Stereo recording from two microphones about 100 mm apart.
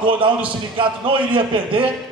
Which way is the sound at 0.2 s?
55° right (ahead or behind).